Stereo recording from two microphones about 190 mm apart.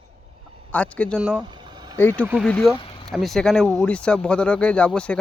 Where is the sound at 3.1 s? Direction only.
Centre (ahead or behind).